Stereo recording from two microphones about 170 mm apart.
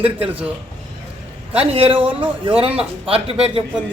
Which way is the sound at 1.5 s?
35° right (ahead or behind).